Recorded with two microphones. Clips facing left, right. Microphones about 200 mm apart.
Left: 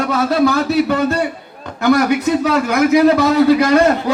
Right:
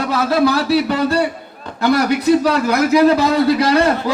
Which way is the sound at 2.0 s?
35° right (ahead or behind).